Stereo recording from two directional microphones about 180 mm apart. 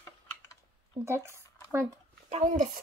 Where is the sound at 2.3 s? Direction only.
45° right (ahead or behind).